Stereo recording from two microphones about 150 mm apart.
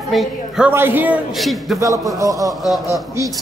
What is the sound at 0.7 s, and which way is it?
Speech, 15° right (ahead or behind).